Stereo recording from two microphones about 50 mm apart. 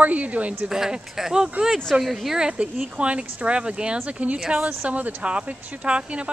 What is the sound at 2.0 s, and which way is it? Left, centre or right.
Speech, centre.